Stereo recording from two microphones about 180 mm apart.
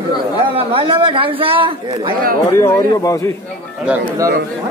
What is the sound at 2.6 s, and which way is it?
Speech, 20° left (ahead or behind).